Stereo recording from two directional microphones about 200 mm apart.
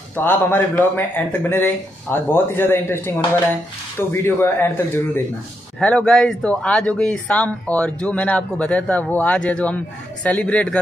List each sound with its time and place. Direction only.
0.1 s speech: 10° left (ahead or behind)
4.1 s speech: 10° left (ahead or behind)